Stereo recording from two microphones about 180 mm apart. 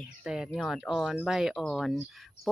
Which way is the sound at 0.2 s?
5° right (ahead or behind).